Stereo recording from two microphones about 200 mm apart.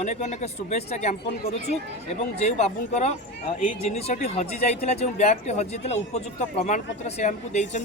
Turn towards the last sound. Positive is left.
turn(degrees=35)  # may be behind; listen again after turning